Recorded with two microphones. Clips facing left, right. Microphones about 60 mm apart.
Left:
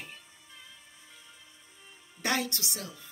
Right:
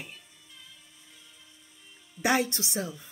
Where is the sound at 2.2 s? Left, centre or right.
Centre.